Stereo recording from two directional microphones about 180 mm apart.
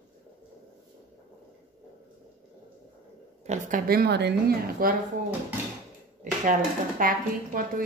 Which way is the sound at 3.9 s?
65° right (ahead or behind).